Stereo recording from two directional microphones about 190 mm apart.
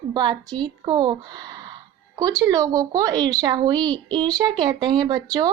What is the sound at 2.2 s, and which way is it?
Speech, 20° right (ahead or behind).